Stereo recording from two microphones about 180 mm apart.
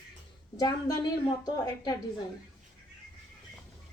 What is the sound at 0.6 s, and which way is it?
Speech, 20° left (ahead or behind).